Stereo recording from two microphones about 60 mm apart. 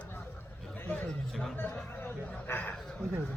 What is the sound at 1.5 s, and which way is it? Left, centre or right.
Chatter, left.